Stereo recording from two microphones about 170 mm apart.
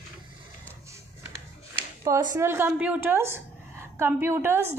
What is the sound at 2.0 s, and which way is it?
Speech, 25° right (ahead or behind).